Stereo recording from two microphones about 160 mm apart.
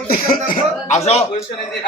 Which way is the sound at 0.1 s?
60° left (ahead or behind).